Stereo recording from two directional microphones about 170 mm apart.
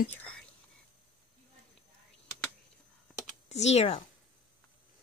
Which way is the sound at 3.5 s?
40° left (ahead or behind).